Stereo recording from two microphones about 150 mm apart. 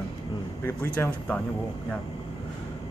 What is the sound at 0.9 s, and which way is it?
Speech, 10° left (ahead or behind).